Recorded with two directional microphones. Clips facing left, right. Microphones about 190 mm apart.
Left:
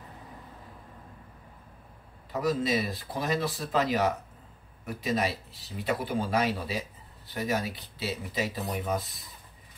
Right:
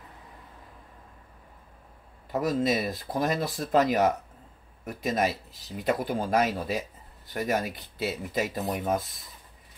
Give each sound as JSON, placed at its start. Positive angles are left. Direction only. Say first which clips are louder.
{"t": 2.3, "sound": "speech", "louder": "right 2 dB", "side_deg": -50}